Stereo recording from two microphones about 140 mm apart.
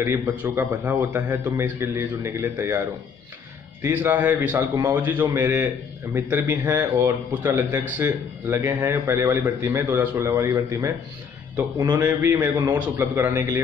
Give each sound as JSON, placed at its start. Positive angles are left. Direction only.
{"t": 0.0, "sound": "a man's voice", "side_deg": -15}
{"t": 3.8, "sound": "a man's voice", "side_deg": -15}